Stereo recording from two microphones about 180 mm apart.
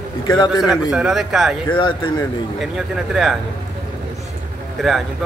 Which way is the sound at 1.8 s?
25° left (ahead or behind).